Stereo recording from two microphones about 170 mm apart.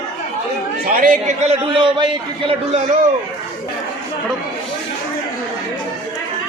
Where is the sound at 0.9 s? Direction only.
50° right (ahead or behind).